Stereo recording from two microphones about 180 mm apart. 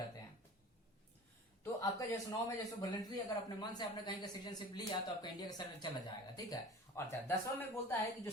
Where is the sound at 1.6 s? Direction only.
20° left (ahead or behind).